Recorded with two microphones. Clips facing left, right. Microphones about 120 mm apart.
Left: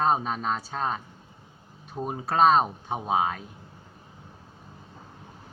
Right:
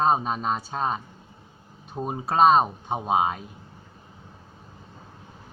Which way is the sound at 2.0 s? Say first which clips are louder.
Right 2 dB; 20° right (ahead or behind).